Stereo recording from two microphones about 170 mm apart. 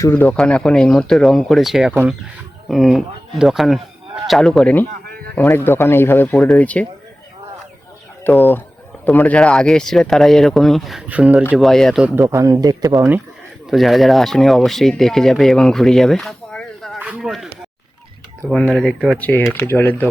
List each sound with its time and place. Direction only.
0.0 s speech: 10° left (ahead or behind)
8.2 s speech: 15° left (ahead or behind)
12.0 s speech: 15° right (ahead or behind)
13.7 s speech: centre (ahead or behind)